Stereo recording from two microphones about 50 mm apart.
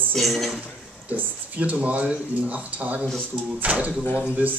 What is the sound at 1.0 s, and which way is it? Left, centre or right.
Speech, right.